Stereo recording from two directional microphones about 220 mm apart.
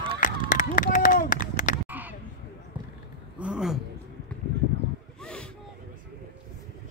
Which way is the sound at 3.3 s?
5° right (ahead or behind).